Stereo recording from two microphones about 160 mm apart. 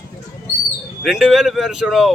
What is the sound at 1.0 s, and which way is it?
A man's voice, centre (ahead or behind).